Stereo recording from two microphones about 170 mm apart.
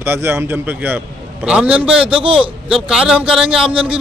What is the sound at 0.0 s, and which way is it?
A man's voice, 15° right (ahead or behind).